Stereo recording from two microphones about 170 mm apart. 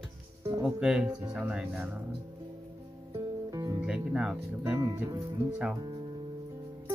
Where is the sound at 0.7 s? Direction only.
5° right (ahead or behind).